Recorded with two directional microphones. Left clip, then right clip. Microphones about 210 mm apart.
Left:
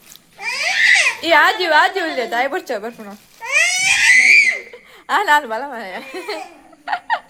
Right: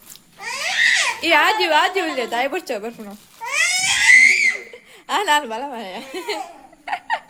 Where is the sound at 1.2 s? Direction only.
10° right (ahead or behind).